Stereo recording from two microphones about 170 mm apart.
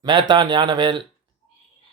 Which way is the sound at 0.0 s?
25° right (ahead or behind).